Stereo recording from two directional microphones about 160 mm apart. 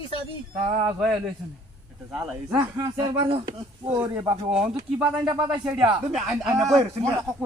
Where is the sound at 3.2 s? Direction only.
30° right (ahead or behind).